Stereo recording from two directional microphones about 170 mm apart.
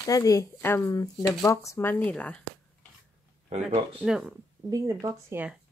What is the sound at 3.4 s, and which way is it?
Speech, 35° right (ahead or behind).